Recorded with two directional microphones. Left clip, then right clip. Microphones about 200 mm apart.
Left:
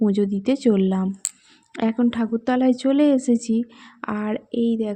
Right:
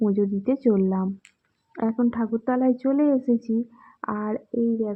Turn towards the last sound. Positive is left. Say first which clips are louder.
# left 2 dB
turn(degrees=25)  # may be behind; listen again after turning